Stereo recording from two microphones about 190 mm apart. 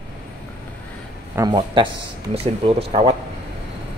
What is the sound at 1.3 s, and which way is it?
Speech, 20° right (ahead or behind).